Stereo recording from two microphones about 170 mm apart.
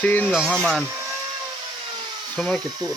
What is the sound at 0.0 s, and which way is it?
Speech, 10° left (ahead or behind).